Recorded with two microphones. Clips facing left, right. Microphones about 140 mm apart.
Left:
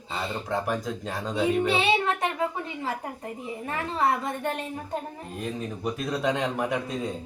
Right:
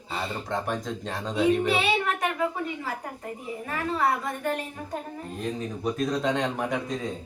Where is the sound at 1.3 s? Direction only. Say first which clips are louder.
Right 1 dB; 25° left (ahead or behind).